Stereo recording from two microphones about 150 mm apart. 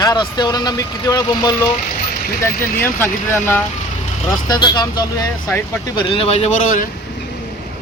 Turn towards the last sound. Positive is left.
turn(degrees=60)  # may be behind; listen again after turning